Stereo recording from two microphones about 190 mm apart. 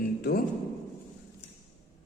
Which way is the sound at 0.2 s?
55° left (ahead or behind).